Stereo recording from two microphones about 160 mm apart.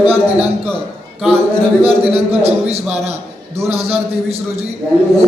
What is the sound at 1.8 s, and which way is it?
A man's voice, 40° right (ahead or behind).